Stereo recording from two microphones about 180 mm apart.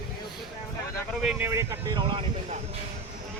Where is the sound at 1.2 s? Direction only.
15° right (ahead or behind).